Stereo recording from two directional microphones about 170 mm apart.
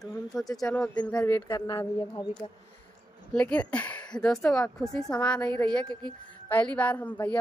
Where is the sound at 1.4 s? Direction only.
25° left (ahead or behind).